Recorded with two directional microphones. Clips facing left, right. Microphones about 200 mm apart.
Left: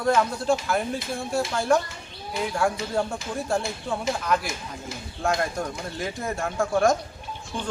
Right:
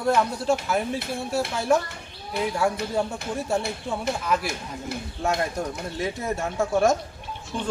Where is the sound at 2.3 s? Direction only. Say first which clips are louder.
Right 2 dB; 60° right (ahead or behind).